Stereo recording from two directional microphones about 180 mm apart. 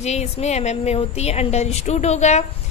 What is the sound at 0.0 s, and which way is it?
Music, 40° left (ahead or behind).